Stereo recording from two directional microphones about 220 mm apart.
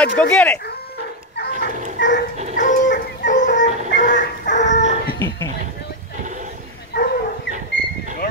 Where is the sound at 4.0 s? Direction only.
35° left (ahead or behind).